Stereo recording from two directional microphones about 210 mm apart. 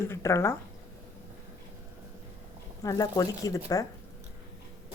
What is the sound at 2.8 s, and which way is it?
A woman's voice, 15° left (ahead or behind).